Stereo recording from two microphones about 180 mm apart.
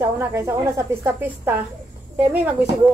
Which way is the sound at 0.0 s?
15° right (ahead or behind).